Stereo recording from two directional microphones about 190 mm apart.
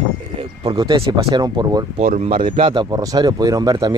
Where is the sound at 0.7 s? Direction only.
25° right (ahead or behind).